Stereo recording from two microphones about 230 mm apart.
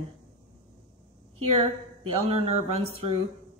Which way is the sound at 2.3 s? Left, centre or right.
Right.